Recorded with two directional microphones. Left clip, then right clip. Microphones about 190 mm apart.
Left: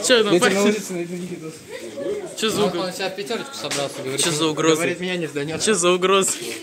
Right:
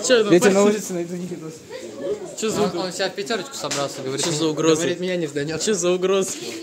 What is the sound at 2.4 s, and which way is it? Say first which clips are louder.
Speech: left 2 dB; 5° left (ahead or behind).